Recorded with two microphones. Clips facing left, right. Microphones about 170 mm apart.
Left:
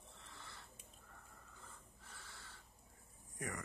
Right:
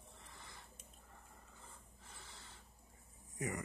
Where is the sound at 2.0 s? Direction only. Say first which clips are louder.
Right 1 dB; 15° right (ahead or behind).